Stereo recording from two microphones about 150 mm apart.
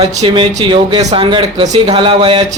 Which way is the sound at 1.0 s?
50° right (ahead or behind).